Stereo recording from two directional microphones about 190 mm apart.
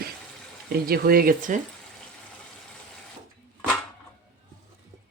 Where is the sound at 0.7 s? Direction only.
55° right (ahead or behind).